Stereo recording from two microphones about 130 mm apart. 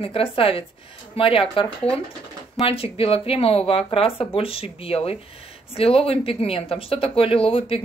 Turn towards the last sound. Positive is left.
turn(degrees=45)  # may be behind; listen again after turning